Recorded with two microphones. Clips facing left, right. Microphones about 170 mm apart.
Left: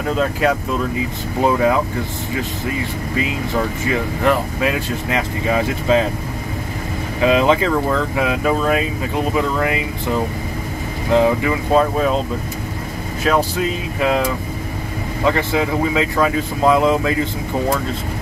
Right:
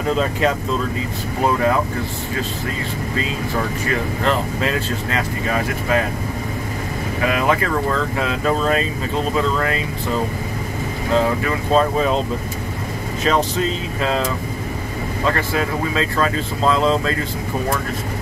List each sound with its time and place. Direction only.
0.2 s speech: 5° left (ahead or behind)
1.4 s speech: 15° left (ahead or behind)
3.9 s speech: 15° left (ahead or behind)
7.2 s speech: 20° left (ahead or behind)
11.1 s speech: 15° left (ahead or behind)
13.2 s speech: 10° left (ahead or behind)
15.2 s speech: 15° left (ahead or behind)